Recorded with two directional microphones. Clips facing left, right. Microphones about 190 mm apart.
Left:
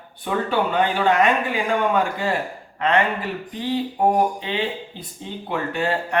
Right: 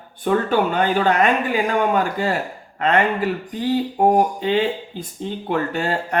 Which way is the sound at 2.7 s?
45° right (ahead or behind).